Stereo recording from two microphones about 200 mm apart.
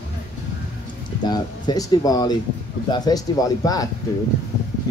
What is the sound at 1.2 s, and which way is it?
Speech, 20° left (ahead or behind).